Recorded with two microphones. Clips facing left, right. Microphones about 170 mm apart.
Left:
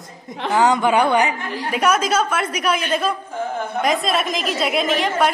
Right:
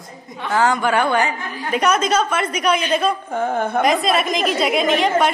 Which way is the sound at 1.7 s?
5° left (ahead or behind).